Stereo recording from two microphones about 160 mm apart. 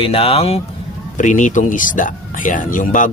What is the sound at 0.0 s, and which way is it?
Speech, 35° left (ahead or behind).